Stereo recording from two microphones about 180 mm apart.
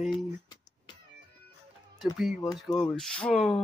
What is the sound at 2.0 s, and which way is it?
Speech, centre (ahead or behind).